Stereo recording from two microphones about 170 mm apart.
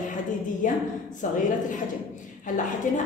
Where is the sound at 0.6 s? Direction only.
50° left (ahead or behind).